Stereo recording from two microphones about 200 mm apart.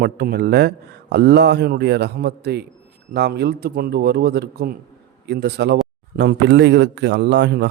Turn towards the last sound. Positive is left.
turn(degrees=-60)  # may be behind; listen again after turning